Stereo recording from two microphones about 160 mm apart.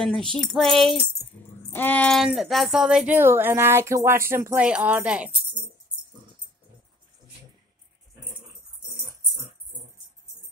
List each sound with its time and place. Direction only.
0.4 s keys jangling: 5° left (ahead or behind)
1.7 s speech: 10° left (ahead or behind); by 5.3 s 10° right (ahead or behind)